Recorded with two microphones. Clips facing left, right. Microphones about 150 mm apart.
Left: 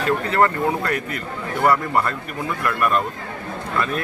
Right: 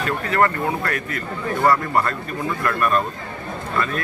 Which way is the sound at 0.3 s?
20° left (ahead or behind).